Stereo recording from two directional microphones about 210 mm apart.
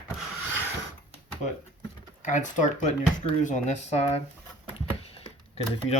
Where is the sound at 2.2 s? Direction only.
35° left (ahead or behind).